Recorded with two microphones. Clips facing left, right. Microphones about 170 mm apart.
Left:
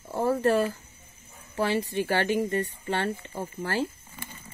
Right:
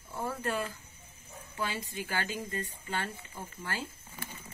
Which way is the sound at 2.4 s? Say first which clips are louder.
Left 11 dB; 70° left (ahead or behind).